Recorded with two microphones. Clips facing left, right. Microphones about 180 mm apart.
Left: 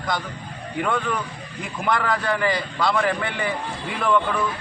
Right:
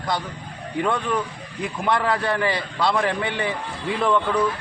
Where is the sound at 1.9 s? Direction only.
25° right (ahead or behind).